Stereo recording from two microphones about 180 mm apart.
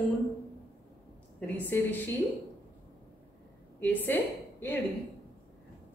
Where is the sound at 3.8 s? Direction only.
10° left (ahead or behind).